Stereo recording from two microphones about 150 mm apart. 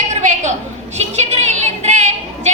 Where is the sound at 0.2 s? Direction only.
55° right (ahead or behind).